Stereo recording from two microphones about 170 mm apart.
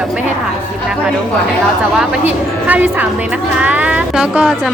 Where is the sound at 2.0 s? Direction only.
10° right (ahead or behind).